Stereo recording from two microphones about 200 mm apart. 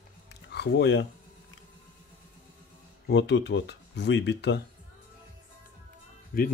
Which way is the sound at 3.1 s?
60° left (ahead or behind).